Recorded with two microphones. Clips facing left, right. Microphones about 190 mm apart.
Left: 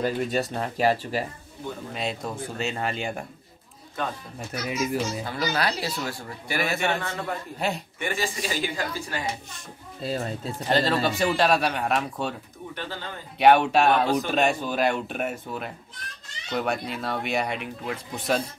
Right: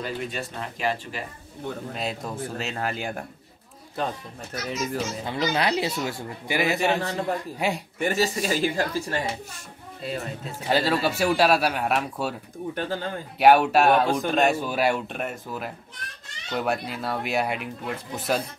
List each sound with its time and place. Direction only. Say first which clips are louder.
0.0 s speech: left 6 dB; 40° left (ahead or behind)
2.0 s speech: even; centre (ahead or behind)
4.5 s speech: left 2 dB; 10° left (ahead or behind)
5.2 s speech: right 2 dB; 20° right (ahead or behind)
7.0 s speech: right 4 dB; 35° right (ahead or behind)
7.5 s a man's voice: left 2 dB; 10° right (ahead or behind)
8.0 s speech: right 6 dB; 40° right (ahead or behind)
10.0 s speech: left 2 dB; 35° left (ahead or behind)
10.7 s speech: even; 10° right (ahead or behind)
12.7 s speech: right 6 dB; 45° right (ahead or behind)
13.4 s speech: right 1 dB; 5° right (ahead or behind)